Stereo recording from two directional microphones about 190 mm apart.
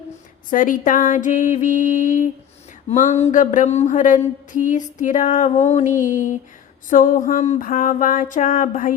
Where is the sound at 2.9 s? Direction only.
40° left (ahead or behind).